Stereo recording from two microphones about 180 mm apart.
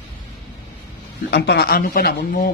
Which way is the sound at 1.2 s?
65° left (ahead or behind).